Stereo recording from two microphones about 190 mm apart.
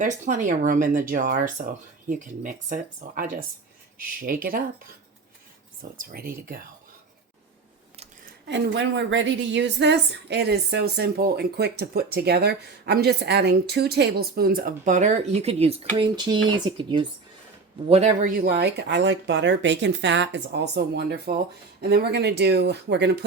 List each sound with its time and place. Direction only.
0.3 s speech: 40° right (ahead or behind)
4.3 s speech: 50° right (ahead or behind)
5.8 s speech: 50° right (ahead or behind)
8.4 s a woman's voice: 70° right (ahead or behind)